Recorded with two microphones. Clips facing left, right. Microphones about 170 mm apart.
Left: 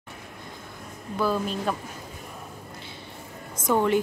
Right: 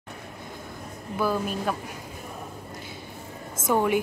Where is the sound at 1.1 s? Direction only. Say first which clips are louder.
Even; 10° right (ahead or behind).